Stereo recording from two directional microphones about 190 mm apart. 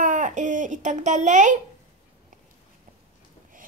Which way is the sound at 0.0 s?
45° right (ahead or behind).